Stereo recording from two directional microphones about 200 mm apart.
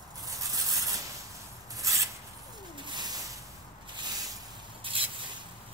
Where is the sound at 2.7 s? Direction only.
20° right (ahead or behind).